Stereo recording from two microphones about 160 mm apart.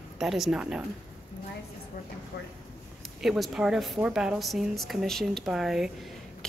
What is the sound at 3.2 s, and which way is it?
A woman's voice, centre (ahead or behind).